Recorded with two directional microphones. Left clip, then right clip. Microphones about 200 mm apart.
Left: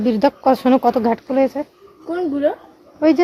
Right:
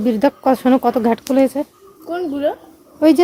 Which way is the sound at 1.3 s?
25° right (ahead or behind).